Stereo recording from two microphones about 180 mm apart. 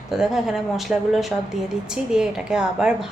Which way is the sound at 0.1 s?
Centre (ahead or behind).